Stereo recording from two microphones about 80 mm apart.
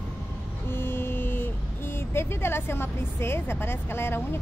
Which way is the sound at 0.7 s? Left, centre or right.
Left.